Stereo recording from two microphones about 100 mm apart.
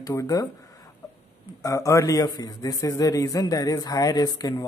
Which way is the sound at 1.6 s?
35° left (ahead or behind).